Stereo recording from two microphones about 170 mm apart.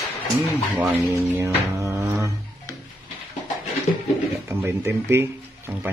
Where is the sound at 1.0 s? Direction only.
10° right (ahead or behind).